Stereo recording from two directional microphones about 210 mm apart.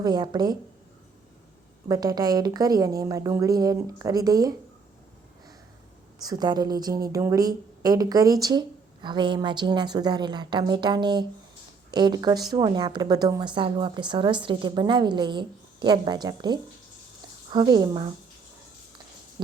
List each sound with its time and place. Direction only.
0.0 s a woman's voice: 20° right (ahead or behind)
1.9 s a woman's voice: 20° right (ahead or behind)
6.2 s a woman's voice: 20° right (ahead or behind)